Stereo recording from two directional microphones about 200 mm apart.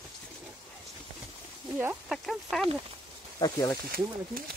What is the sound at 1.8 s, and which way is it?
Speech, 5° right (ahead or behind).